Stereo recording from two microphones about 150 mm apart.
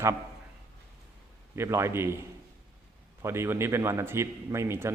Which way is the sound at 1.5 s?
15° right (ahead or behind).